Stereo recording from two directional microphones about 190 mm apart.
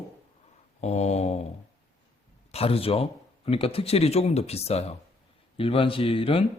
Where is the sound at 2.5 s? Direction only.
30° left (ahead or behind).